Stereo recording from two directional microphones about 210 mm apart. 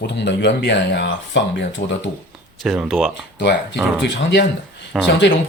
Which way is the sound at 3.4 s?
55° left (ahead or behind).